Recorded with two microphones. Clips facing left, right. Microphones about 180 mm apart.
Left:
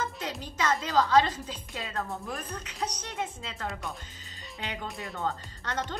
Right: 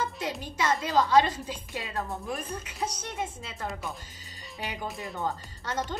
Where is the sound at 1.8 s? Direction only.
15° right (ahead or behind).